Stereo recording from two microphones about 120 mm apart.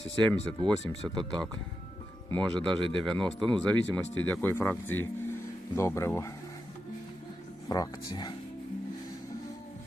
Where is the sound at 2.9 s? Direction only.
5° left (ahead or behind).